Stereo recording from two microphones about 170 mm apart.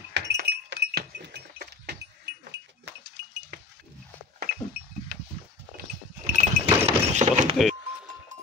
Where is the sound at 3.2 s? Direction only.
90° right.